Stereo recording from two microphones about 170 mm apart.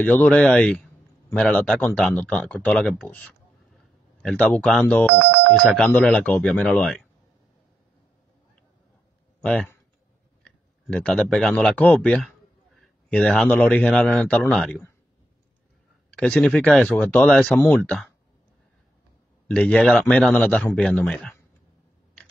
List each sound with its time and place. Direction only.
0.0 s a man's voice: 10° left (ahead or behind)
5.2 s telephone bell ringing: 90° right
5.6 s speech: 5° left (ahead or behind)
9.4 s a man's voice: 5° left (ahead or behind)
16.2 s a man's voice: 5° left (ahead or behind)
19.4 s a man's voice: 5° left (ahead or behind)